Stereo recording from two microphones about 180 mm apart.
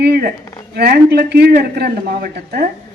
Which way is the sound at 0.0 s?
60° right (ahead or behind).